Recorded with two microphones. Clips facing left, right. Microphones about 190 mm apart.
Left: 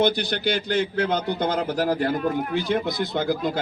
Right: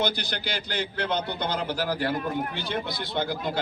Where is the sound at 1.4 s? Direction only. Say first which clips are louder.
Left 5 dB; 50° left (ahead or behind).